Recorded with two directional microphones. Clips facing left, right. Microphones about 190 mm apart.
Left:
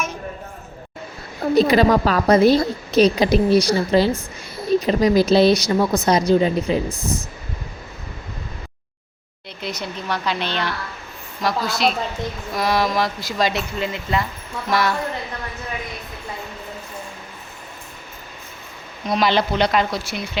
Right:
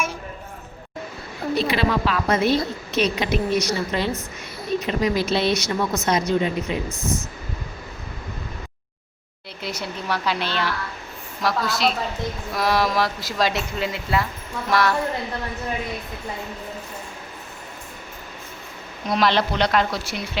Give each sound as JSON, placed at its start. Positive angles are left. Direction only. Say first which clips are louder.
{"t": 1.5, "sound": "a woman's voice", "louder": "left 8 dB", "side_deg": 40}
{"t": 9.6, "sound": "a woman's voice", "louder": "left 1 dB", "side_deg": -5}
{"t": 19.1, "sound": "speech", "louder": "left 2 dB", "side_deg": 0}